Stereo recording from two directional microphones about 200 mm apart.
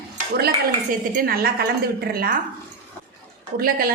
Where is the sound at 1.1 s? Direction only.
45° right (ahead or behind).